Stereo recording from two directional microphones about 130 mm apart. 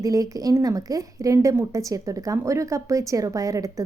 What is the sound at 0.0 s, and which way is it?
A woman's voice, 25° right (ahead or behind).